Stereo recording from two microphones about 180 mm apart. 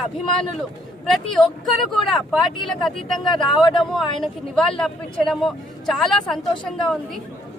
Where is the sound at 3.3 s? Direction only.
25° left (ahead or behind).